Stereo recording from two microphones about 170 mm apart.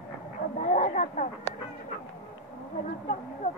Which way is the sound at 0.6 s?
50° left (ahead or behind).